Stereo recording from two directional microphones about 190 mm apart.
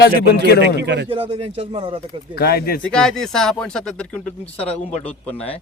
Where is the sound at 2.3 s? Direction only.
55° left (ahead or behind).